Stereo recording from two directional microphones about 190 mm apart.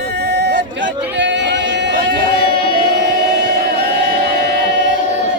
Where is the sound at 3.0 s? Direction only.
60° right (ahead or behind).